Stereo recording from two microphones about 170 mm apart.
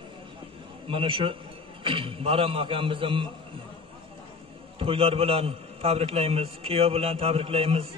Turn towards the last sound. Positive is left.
turn(degrees=-35)  # may be behind; listen again after turning